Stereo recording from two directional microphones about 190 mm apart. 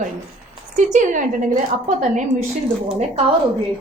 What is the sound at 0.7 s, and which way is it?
Speech, 40° right (ahead or behind).